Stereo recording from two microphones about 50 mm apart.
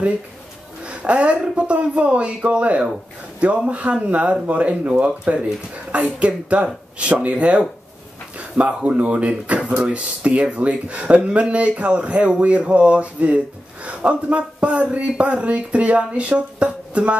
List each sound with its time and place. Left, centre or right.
0.8 s a woman's voice: right